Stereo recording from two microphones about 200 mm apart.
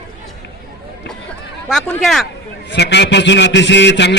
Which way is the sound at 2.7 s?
60° left (ahead or behind).